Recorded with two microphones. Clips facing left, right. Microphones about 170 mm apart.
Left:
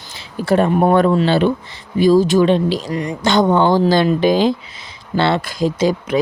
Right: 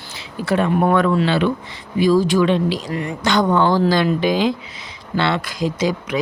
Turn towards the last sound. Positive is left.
turn(degrees=30)  # may be behind; listen again after turning